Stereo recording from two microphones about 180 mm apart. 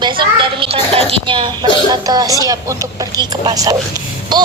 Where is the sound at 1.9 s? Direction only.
20° right (ahead or behind).